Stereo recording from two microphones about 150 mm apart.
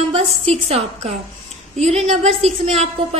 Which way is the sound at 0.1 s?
45° right (ahead or behind).